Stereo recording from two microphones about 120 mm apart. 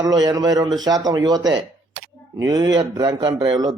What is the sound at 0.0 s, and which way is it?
A man's voice, 35° right (ahead or behind).